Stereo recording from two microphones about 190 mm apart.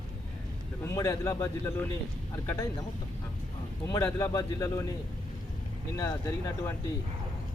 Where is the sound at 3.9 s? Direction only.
15° left (ahead or behind).